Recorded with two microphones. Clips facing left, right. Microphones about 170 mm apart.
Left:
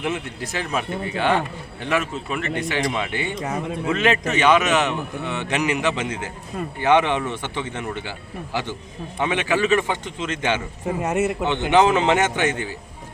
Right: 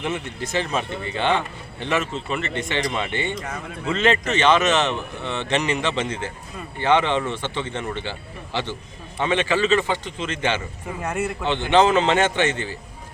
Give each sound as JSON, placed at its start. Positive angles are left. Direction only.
{"t": 0.0, "sound": "a man's voice", "side_deg": 5}
{"t": 9.1, "sound": "a man's voice", "side_deg": 10}